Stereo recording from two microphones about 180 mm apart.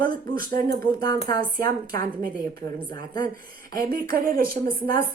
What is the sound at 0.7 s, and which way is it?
Speech, 20° left (ahead or behind).